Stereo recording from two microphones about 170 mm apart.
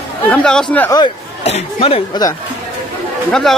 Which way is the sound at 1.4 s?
35° left (ahead or behind).